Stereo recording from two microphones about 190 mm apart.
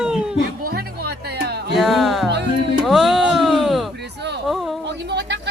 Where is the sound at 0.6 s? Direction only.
55° right (ahead or behind).